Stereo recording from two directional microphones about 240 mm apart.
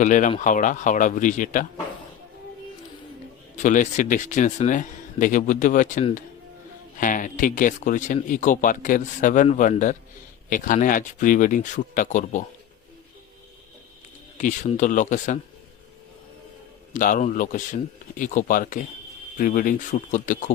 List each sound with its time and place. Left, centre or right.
0.0 s a man's voice: left
3.6 s a man's voice: left
14.3 s a man's voice: left
16.9 s a man's voice: left